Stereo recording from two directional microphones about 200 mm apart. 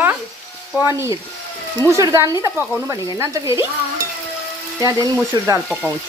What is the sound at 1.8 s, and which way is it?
Speech, 15° right (ahead or behind).